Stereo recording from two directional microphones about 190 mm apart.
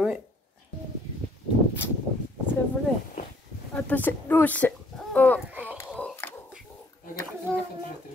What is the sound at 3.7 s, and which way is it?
A woman's voice, 10° left (ahead or behind).